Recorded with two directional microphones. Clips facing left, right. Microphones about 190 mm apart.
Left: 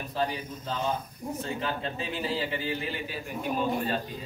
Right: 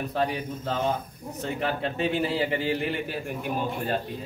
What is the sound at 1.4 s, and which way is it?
A man's voice, 70° right (ahead or behind).